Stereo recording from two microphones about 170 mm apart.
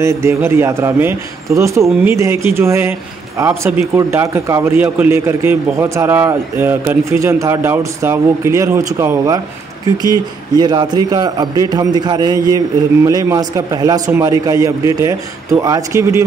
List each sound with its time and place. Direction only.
0.0 s a man's voice: 15° right (ahead or behind)
10.6 s a man's voice: 25° right (ahead or behind)